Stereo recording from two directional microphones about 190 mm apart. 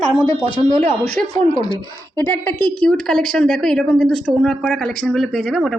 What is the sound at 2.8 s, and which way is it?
A woman's voice, 5° left (ahead or behind).